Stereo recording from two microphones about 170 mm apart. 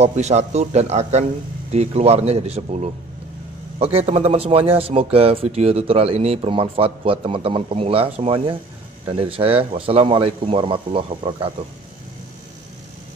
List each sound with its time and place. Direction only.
0.0 s speech: 40° right (ahead or behind)